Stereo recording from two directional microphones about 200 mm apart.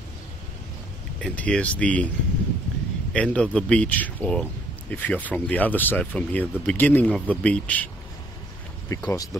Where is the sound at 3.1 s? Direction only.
5° left (ahead or behind).